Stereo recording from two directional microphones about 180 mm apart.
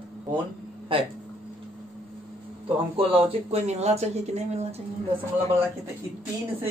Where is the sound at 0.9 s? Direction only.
30° right (ahead or behind).